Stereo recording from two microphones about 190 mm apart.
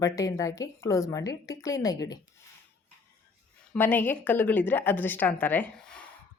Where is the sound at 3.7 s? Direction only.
10° left (ahead or behind).